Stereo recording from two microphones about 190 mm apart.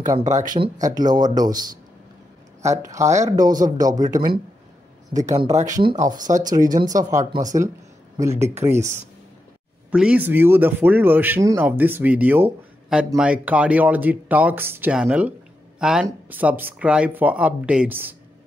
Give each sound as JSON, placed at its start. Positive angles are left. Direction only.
{"t": 0.0, "sound": "speech", "side_deg": -40}
{"t": 0.8, "sound": "speech", "side_deg": -20}
{"t": 2.8, "sound": "speech", "side_deg": -15}
{"t": 5.9, "sound": "speech", "side_deg": -40}
{"t": 6.4, "sound": "speech", "side_deg": -20}
{"t": 9.8, "sound": "speech", "side_deg": -5}